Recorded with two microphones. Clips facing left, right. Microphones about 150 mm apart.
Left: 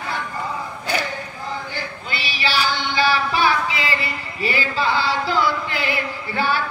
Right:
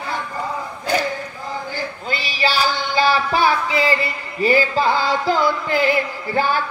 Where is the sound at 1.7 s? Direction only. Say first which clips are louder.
Right 4 dB; 40° right (ahead or behind).